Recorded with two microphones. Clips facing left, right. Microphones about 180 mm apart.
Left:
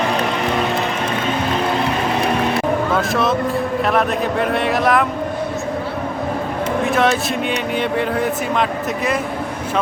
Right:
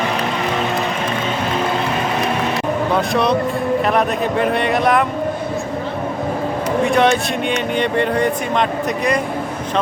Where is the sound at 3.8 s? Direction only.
Centre (ahead or behind).